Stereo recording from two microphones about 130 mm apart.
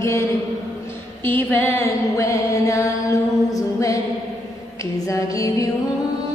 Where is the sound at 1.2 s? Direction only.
15° left (ahead or behind).